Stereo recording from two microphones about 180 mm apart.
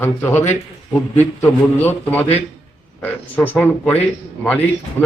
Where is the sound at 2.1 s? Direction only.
10° left (ahead or behind).